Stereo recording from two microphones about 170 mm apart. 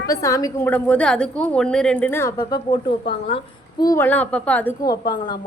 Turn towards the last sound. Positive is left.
turn(degrees=25)  # may be behind; listen again after turning